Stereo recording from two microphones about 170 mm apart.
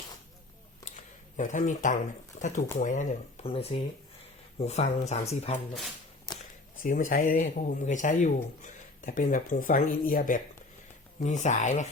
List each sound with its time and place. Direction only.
1.4 s speech: 50° left (ahead or behind)
3.4 s speech: 35° left (ahead or behind)
6.8 s speech: 50° left (ahead or behind)
11.2 s speech: 45° left (ahead or behind)